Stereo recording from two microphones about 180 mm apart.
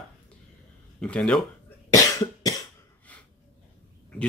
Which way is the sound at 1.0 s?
5° left (ahead or behind).